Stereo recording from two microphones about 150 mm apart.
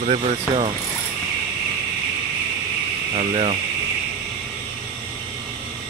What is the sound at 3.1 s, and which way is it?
Speech, 45° right (ahead or behind).